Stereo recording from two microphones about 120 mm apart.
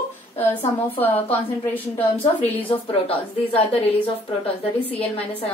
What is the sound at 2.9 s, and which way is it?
A woman's voice, 50° left (ahead or behind).